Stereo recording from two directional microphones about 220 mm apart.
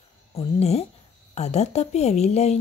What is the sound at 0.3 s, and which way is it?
A woman's voice, 30° left (ahead or behind).